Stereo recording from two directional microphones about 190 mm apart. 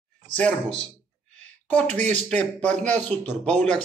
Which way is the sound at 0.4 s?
5° left (ahead or behind).